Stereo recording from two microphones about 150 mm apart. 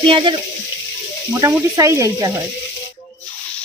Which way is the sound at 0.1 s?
35° right (ahead or behind).